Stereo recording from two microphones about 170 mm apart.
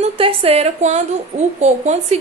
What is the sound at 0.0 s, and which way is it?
A woman's voice, 35° right (ahead or behind).